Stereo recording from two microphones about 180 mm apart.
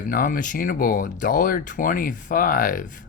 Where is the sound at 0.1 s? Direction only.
50° left (ahead or behind).